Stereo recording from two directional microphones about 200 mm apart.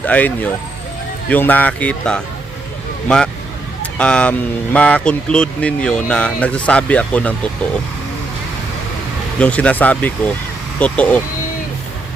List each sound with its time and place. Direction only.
0.0 s speech: 10° left (ahead or behind)
9.4 s speech: 5° left (ahead or behind)